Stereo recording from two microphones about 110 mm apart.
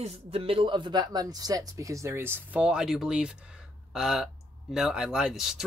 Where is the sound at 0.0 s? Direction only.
60° right (ahead or behind).